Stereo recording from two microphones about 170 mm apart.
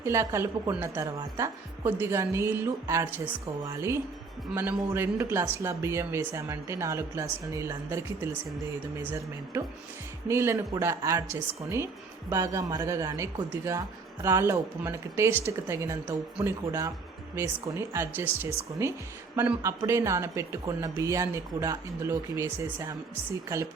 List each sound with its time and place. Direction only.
0.0 s speech: 15° right (ahead or behind)
10.2 s speech: 15° right (ahead or behind)